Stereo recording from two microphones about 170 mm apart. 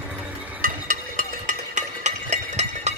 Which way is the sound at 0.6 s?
50° right (ahead or behind).